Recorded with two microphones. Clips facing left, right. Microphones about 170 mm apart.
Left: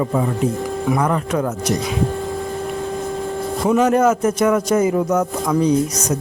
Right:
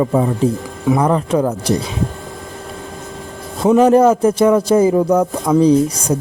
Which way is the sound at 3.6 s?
30° right (ahead or behind).